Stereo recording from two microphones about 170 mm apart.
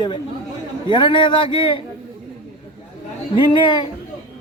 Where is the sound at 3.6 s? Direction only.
25° left (ahead or behind).